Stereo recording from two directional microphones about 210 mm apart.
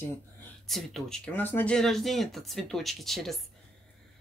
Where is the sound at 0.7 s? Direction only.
Centre (ahead or behind).